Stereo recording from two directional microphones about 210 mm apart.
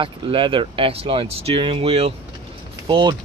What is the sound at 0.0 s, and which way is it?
Speech, 25° right (ahead or behind).